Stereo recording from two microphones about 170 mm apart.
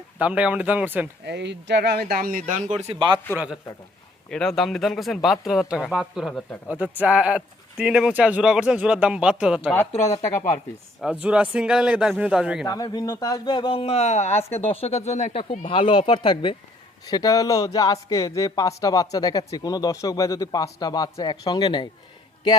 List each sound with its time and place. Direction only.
0.2 s speech: 10° right (ahead or behind)
1.2 s speech: 90° right; by 3.2 s 30° right (ahead or behind)
3.3 s speech: 5° right (ahead or behind)
6.7 s speech: 10° right (ahead or behind)
11.0 s speech: 5° right (ahead or behind)
12.6 s speech: 20° left (ahead or behind)